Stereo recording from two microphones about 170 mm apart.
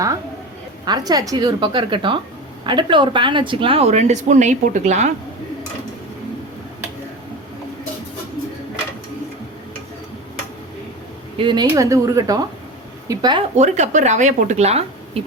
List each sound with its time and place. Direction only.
0.9 s a woman's voice: 20° right (ahead or behind); by 5.1 s 45° right (ahead or behind)
11.3 s speech: 30° right (ahead or behind)
11.7 s a woman's voice: 20° right (ahead or behind)
13.6 s speech: 45° right (ahead or behind)